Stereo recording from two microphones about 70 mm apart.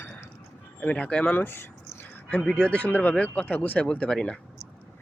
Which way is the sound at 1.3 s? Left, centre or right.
Left.